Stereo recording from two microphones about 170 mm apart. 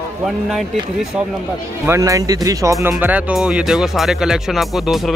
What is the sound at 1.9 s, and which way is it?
Speech, 20° right (ahead or behind).